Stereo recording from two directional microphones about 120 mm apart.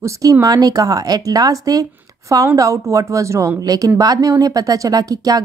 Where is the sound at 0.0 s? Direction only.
30° right (ahead or behind).